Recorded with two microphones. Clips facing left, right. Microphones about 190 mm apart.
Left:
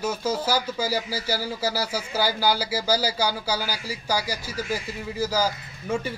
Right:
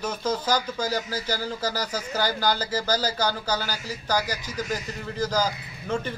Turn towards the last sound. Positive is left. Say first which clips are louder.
# left 1 dB
turn(degrees=10)  # may be behind; listen again after turning